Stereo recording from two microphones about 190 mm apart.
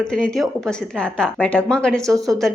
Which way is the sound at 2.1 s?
15° right (ahead or behind).